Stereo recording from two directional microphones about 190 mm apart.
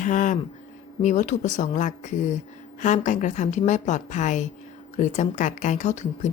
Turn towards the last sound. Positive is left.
turn(degrees=40)  # may be behind; listen again after turning